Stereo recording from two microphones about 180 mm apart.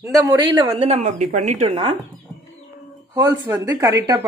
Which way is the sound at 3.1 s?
20° right (ahead or behind).